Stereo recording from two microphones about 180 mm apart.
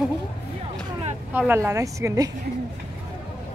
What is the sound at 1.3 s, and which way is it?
Speech, 10° right (ahead or behind).